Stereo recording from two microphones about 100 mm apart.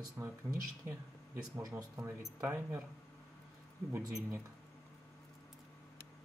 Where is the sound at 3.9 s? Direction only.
25° right (ahead or behind).